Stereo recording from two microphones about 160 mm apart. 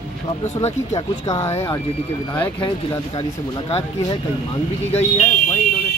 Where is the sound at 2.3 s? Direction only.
30° left (ahead or behind).